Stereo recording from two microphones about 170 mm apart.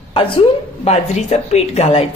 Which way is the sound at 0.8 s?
40° left (ahead or behind).